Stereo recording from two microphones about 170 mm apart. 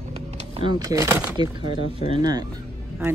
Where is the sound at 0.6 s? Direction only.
25° right (ahead or behind).